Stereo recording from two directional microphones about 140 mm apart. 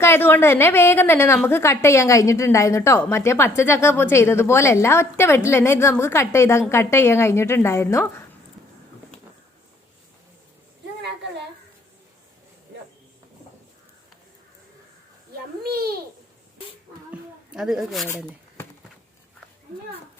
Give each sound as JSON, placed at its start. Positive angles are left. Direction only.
{"t": 0.0, "sound": "a woman's voice", "side_deg": 15}
{"t": 15.6, "sound": "babbling", "side_deg": -90}
{"t": 17.5, "sound": "speech", "side_deg": -5}